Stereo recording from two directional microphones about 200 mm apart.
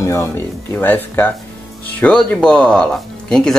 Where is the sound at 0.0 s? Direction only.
15° left (ahead or behind).